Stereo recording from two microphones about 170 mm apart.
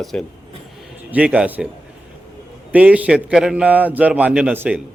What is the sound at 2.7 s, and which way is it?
A man's voice, 10° right (ahead or behind).